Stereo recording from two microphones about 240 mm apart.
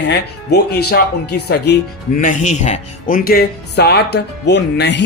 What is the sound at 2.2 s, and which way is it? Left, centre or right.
Speech, left.